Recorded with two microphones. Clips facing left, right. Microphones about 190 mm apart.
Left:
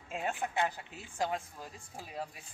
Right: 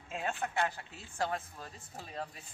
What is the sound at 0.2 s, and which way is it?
Speech, 15° left (ahead or behind).